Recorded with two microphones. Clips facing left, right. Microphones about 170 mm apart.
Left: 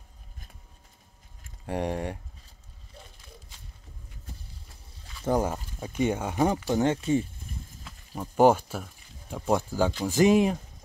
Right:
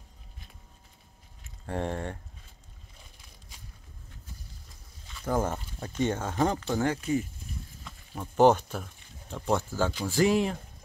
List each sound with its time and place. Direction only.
1.7 s speech: 15° left (ahead or behind)
5.2 s speech: 15° left (ahead or behind)
7.8 s speech: 10° left (ahead or behind)